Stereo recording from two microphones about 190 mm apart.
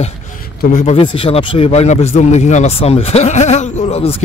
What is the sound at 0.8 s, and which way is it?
Speech, 30° left (ahead or behind).